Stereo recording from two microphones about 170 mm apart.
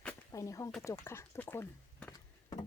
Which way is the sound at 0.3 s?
20° left (ahead or behind).